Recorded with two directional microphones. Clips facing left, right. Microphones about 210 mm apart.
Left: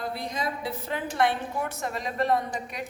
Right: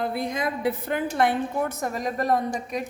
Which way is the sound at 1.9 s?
40° right (ahead or behind).